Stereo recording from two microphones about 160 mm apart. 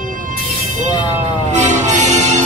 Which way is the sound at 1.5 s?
50° right (ahead or behind).